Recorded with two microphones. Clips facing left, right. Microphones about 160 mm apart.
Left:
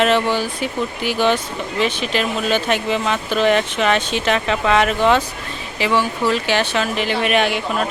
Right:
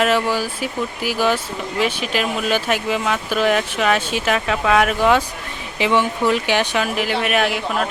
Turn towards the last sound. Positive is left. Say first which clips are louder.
# left 1 dB
turn(degrees=0)  # may be behind; listen again after turning